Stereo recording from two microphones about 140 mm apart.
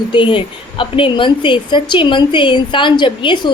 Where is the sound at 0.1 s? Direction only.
35° left (ahead or behind).